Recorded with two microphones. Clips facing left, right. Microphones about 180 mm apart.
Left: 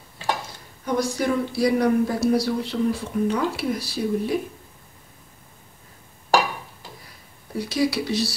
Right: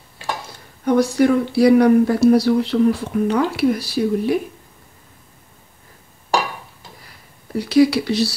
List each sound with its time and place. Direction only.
0.8 s speech: 60° right (ahead or behind)
7.5 s speech: 70° right (ahead or behind)